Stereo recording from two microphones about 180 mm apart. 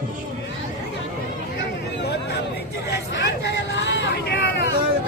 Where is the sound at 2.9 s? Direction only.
70° left (ahead or behind).